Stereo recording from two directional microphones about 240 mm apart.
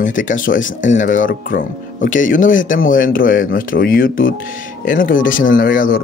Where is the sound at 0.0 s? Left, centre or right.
Left.